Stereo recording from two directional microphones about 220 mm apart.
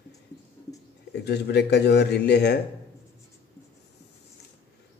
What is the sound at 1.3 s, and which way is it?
Speech, 50° left (ahead or behind).